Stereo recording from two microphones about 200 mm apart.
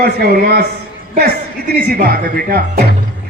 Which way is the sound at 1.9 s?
50° right (ahead or behind).